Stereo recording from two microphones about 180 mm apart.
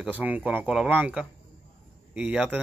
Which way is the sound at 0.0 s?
10° right (ahead or behind).